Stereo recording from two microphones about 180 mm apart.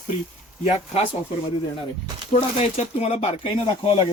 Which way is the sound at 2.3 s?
35° left (ahead or behind).